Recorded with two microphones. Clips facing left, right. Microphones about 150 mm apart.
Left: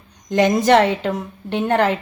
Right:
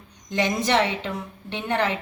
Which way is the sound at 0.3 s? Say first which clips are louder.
Left 9 dB; 40° left (ahead or behind).